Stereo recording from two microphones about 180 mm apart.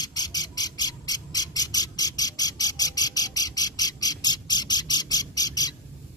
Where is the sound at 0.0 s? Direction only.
20° left (ahead or behind).